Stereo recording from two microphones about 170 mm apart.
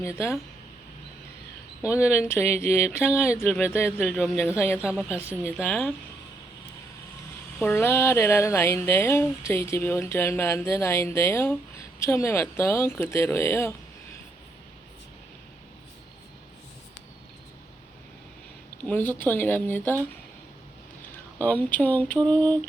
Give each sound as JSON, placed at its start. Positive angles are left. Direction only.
{"t": 0.0, "sound": "speech", "side_deg": 15}
{"t": 1.8, "sound": "a woman's voice", "side_deg": -5}
{"t": 2.0, "sound": "a woman's voice", "side_deg": 15}
{"t": 5.6, "sound": "speech", "side_deg": 5}
{"t": 7.6, "sound": "speech", "side_deg": 15}
{"t": 18.9, "sound": "speech", "side_deg": 10}
{"t": 21.1, "sound": "a sound", "side_deg": 10}